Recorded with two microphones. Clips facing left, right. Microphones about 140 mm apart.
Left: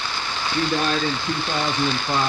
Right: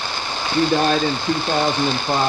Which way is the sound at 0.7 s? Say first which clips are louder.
Right 4 dB; 35° right (ahead or behind).